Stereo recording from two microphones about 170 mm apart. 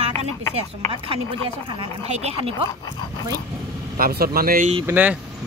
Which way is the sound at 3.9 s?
60° right (ahead or behind).